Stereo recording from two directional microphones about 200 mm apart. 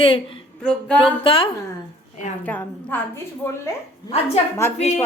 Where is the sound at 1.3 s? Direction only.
25° left (ahead or behind).